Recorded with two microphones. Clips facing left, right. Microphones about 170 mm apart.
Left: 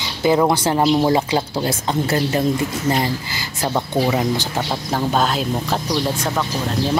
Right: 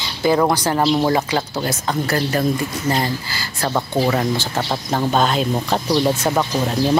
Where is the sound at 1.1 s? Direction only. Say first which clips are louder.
Left 1 dB; 25° left (ahead or behind).